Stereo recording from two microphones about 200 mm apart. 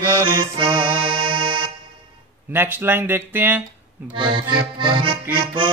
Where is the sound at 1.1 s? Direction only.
25° right (ahead or behind).